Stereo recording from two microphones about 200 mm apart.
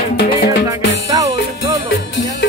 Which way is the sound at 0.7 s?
15° right (ahead or behind).